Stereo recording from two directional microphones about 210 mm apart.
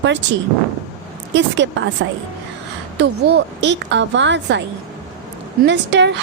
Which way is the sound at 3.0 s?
55° right (ahead or behind).